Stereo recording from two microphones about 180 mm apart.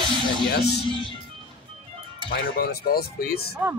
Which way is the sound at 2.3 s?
55° left (ahead or behind).